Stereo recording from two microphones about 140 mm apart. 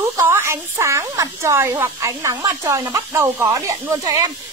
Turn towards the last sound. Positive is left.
turn(degrees=-25)  # may be behind; listen again after turning